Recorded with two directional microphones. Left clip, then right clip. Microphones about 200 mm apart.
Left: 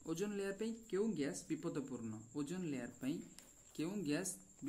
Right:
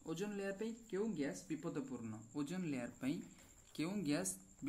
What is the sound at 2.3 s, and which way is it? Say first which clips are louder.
A man's voice: even; 5° left (ahead or behind).